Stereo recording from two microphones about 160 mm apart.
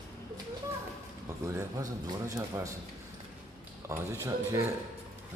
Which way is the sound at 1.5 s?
20° right (ahead or behind).